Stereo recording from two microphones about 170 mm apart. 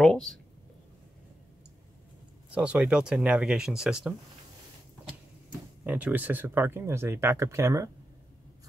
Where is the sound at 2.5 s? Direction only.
5° right (ahead or behind).